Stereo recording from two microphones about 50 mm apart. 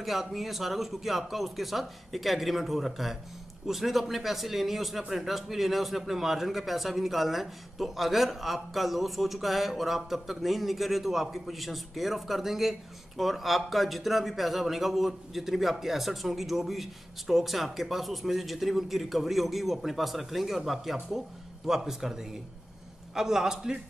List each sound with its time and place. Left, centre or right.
0.0 s a man's voice: centre